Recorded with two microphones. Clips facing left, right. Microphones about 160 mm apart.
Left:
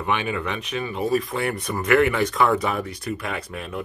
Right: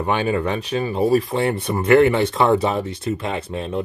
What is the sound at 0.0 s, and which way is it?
Speech, 35° right (ahead or behind).